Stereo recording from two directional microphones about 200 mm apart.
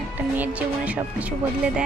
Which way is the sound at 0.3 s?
10° right (ahead or behind).